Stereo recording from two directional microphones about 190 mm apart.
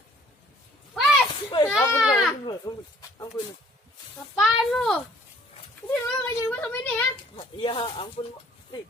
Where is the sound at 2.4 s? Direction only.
25° left (ahead or behind).